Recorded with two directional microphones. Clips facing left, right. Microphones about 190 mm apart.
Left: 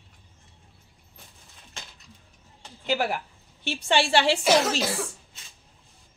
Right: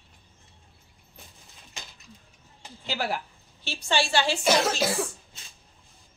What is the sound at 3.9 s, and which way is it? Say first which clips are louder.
Speech: left 3 dB; 65° left (ahead or behind).